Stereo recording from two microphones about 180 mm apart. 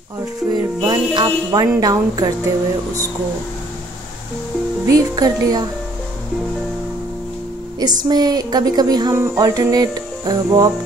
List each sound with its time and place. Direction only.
0.5 s speech: 25° right (ahead or behind)
4.8 s speech: 20° right (ahead or behind)
7.8 s speech: 25° right (ahead or behind)